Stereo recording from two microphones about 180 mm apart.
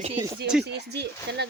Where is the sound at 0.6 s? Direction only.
70° right (ahead or behind).